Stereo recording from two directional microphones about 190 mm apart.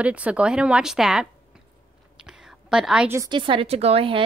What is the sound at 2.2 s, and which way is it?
Whispering, 5° right (ahead or behind).